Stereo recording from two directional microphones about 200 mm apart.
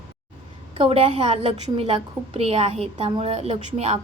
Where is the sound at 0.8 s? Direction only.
30° right (ahead or behind).